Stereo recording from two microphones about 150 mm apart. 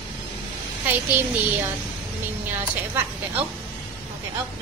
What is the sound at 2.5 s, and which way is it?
Speech, 15° right (ahead or behind).